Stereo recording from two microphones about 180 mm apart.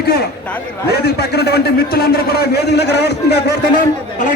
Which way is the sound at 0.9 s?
60° left (ahead or behind).